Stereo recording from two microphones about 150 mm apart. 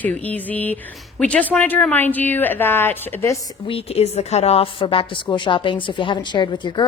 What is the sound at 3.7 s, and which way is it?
A woman's voice, 40° left (ahead or behind).